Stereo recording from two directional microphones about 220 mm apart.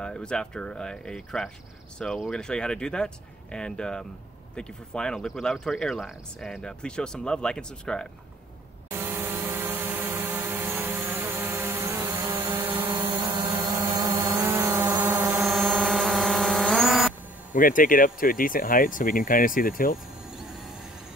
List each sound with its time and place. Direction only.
0.0 s speech: 5° left (ahead or behind)
8.9 s vehicle: 10° right (ahead or behind)
17.5 s speech: 40° left (ahead or behind)